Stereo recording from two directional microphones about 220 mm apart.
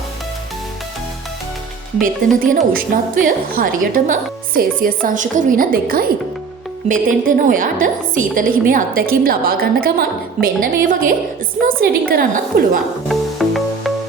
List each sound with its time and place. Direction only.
2.0 s a woman's voice: 40° right (ahead or behind)
13.1 s music: centre (ahead or behind)